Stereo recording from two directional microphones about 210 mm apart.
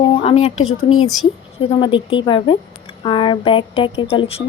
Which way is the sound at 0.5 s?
85° left.